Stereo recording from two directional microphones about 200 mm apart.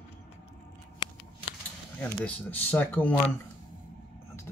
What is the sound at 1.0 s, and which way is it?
Scissors, 20° left (ahead or behind).